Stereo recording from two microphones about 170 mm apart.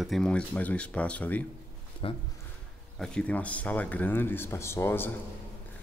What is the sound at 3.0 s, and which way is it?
Speech, 5° left (ahead or behind).